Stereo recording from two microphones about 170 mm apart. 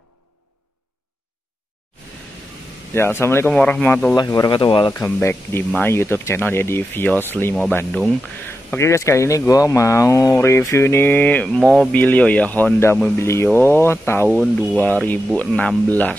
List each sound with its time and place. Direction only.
2.9 s speech: 15° left (ahead or behind)
4.2 s speech: 25° left (ahead or behind)
4.9 s speech: 15° left (ahead or behind)